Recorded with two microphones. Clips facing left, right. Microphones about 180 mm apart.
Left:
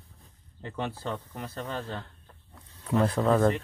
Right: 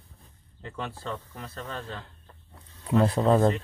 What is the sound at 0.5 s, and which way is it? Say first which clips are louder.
Speech: left 2 dB; 20° left (ahead or behind).